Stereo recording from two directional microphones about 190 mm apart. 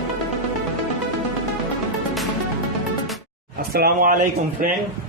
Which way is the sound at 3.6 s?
50° right (ahead or behind).